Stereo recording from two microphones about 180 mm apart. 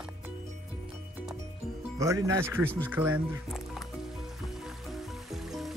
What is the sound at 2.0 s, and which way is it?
Speech, 15° right (ahead or behind).